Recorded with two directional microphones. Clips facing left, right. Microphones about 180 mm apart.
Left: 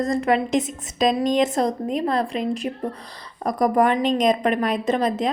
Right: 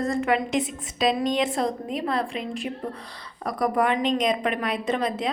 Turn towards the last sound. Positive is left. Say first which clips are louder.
# left 4 dB
turn(degrees=40)  # may be behind; listen again after turning